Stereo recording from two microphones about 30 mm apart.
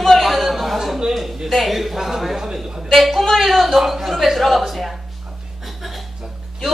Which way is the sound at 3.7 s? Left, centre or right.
Centre.